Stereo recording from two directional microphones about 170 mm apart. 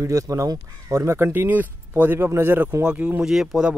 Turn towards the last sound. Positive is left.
turn(degrees=-5)  # may be behind; listen again after turning